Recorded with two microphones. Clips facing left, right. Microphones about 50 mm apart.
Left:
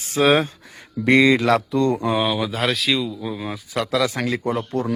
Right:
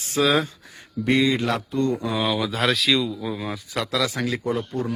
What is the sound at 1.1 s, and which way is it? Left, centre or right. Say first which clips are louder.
Speech: left 6 dB; left.